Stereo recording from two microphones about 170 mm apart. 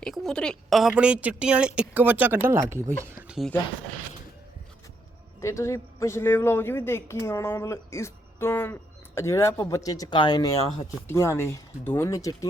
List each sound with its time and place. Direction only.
0.0 s a woman's voice: centre (ahead or behind); by 3.3 s 15° right (ahead or behind)
5.4 s a man's voice: 15° left (ahead or behind)